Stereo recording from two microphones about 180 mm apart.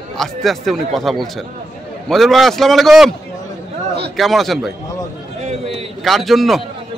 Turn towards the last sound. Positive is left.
turn(degrees=0)  # may be behind; listen again after turning